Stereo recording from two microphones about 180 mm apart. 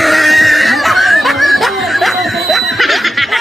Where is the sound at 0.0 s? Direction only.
Centre (ahead or behind).